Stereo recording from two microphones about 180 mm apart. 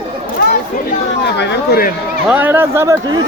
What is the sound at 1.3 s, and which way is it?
Speech, 70° left (ahead or behind).